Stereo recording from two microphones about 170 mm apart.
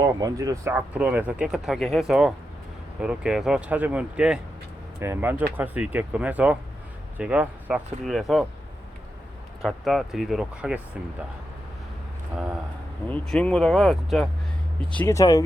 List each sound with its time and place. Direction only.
0.0 s speech: 20° right (ahead or behind); by 8.4 s centre (ahead or behind)
9.6 s speech: centre (ahead or behind)
13.1 s speech: 5° left (ahead or behind)
14.9 s speech: 15° left (ahead or behind)